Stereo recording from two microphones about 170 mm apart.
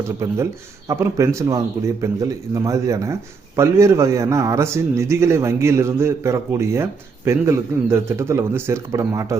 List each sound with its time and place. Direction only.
0.2 s a man's voice: 15° right (ahead or behind)